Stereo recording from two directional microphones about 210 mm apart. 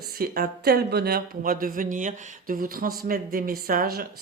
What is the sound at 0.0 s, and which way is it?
Speech, 45° right (ahead or behind).